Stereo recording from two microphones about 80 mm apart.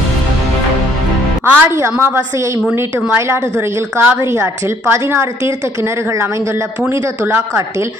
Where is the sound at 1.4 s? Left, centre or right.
Right.